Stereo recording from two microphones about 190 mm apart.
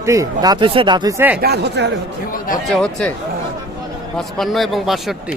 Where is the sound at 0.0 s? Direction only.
15° right (ahead or behind).